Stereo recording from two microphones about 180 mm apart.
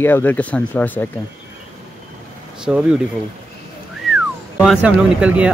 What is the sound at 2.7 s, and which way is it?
Speech, 5° right (ahead or behind).